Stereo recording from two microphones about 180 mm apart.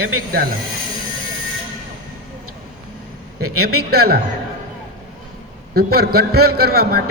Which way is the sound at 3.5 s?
60° right (ahead or behind).